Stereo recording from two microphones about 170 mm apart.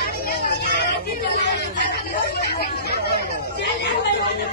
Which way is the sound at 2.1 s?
65° left (ahead or behind).